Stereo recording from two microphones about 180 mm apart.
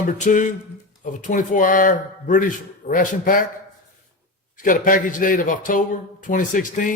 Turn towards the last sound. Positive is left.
turn(degrees=50)  # may be behind; listen again after turning